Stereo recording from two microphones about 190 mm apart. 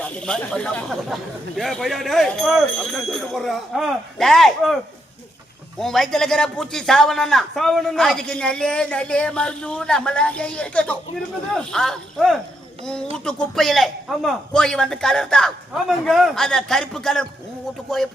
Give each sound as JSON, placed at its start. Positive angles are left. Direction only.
{"t": 0.0, "sound": "a man's voice", "side_deg": 5}
{"t": 5.8, "sound": "a man's voice", "side_deg": 0}